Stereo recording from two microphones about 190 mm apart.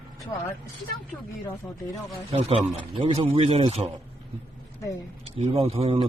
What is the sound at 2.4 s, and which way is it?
A man's voice, 35° right (ahead or behind).